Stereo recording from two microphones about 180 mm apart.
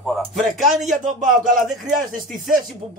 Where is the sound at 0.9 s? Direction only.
45° right (ahead or behind).